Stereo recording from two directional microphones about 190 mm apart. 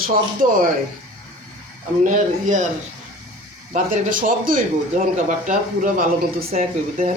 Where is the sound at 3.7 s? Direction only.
45° right (ahead or behind).